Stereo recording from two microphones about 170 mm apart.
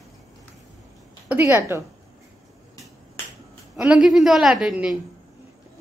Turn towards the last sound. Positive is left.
turn(degrees=-5)  # may be behind; listen again after turning